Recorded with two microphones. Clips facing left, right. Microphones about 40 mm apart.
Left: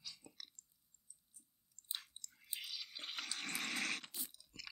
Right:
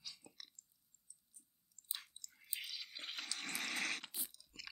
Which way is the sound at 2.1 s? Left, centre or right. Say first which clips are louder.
Left 2 dB; left.